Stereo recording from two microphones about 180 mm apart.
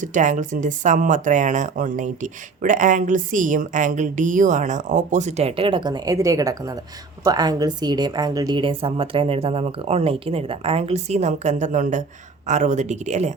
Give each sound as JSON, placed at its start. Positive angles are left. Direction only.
{"t": 0.0, "sound": "a woman's voice", "side_deg": -45}